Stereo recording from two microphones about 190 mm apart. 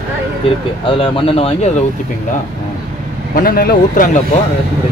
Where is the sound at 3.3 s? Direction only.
50° left (ahead or behind).